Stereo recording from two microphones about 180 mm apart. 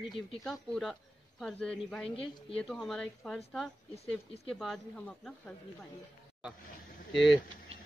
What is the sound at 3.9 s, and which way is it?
Speech, 35° left (ahead or behind).